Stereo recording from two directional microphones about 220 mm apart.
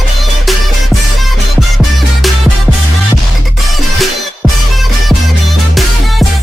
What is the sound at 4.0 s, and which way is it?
Music, centre (ahead or behind).